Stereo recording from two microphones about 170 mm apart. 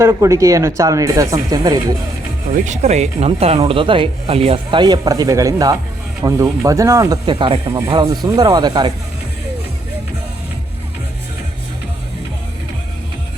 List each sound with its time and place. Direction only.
0.0 s speech: 20° right (ahead or behind)
2.6 s speech: 40° right (ahead or behind); by 8.9 s 25° right (ahead or behind)